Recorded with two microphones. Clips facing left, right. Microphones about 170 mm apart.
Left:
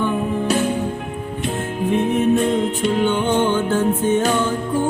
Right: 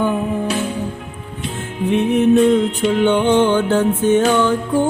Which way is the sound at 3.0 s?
70° right (ahead or behind).